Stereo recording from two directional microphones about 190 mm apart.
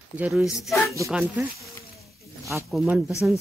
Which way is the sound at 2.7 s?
5° right (ahead or behind).